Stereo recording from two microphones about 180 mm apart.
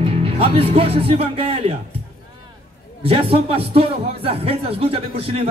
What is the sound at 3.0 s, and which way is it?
Speech, 30° right (ahead or behind).